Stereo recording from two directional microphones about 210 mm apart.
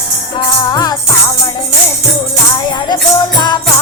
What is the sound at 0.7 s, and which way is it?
Music, 20° left (ahead or behind).